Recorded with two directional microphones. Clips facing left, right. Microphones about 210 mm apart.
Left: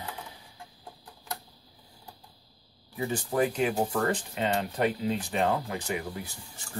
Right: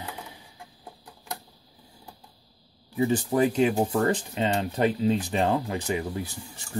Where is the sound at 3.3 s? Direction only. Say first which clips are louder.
Right 2 dB; 25° right (ahead or behind).